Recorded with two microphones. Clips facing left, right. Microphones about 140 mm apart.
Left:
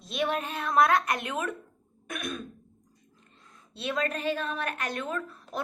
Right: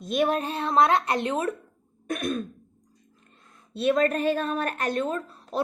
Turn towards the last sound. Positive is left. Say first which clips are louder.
# right 5 dB
turn(degrees=-35)  # may be behind; listen again after turning